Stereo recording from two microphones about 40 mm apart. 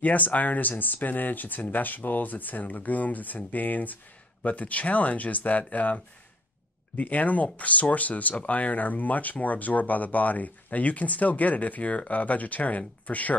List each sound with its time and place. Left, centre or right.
0.0 s speech: left